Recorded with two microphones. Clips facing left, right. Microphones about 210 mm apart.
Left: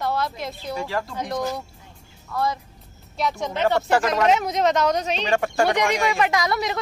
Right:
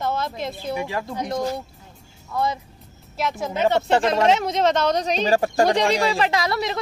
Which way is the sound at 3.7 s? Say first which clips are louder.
Right 1 dB; 25° right (ahead or behind).